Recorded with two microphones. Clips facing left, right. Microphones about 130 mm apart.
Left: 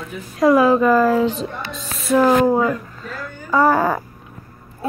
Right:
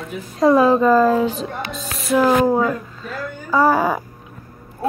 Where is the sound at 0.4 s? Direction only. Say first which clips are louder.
Even; 25° right (ahead or behind).